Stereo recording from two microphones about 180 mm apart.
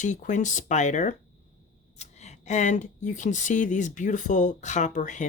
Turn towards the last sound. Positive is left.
turn(degrees=45)  # may be behind; listen again after turning